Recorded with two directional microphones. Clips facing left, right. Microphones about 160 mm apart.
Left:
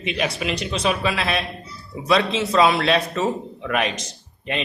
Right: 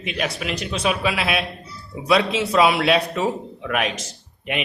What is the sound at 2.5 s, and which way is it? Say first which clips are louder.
A man's voice: even; 10° right (ahead or behind).